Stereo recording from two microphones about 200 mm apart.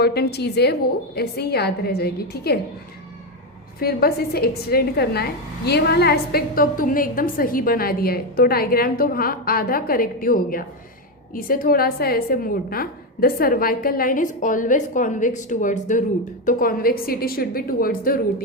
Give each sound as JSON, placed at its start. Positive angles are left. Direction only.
{"t": 0.0, "sound": "a woman's voice", "side_deg": 55}
{"t": 3.8, "sound": "a woman's voice", "side_deg": 50}